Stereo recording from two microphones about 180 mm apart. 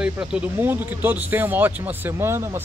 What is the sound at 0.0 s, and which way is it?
Speech, 5° right (ahead or behind).